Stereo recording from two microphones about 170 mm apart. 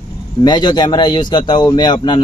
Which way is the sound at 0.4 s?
25° left (ahead or behind).